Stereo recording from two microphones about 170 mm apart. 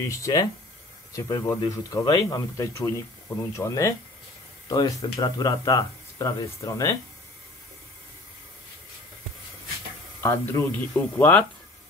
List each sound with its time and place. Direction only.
0.1 s speech: 20° left (ahead or behind)
10.2 s speech: 15° left (ahead or behind)